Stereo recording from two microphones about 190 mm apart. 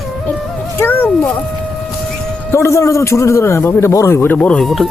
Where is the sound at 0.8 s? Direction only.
10° left (ahead or behind).